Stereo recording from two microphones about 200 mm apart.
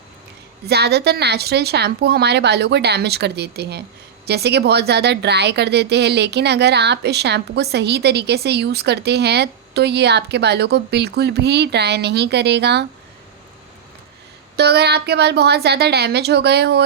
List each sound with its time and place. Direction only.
0.7 s a woman's voice: 55° right (ahead or behind)
14.5 s a woman's voice: 55° right (ahead or behind)